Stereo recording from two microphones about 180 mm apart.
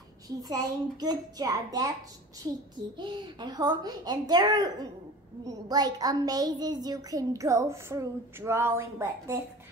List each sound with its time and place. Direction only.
0.4 s a child's voice: 20° right (ahead or behind)
3.0 s a child's voice: 25° right (ahead or behind)